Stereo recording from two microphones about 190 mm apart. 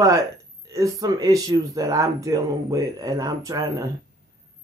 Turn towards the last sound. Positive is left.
turn(degrees=-15)  # may be behind; listen again after turning